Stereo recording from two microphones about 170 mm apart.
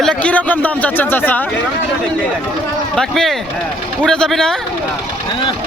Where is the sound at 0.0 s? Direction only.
5° left (ahead or behind).